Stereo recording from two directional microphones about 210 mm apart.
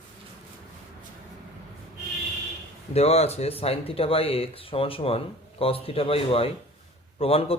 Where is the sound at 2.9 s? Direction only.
30° left (ahead or behind).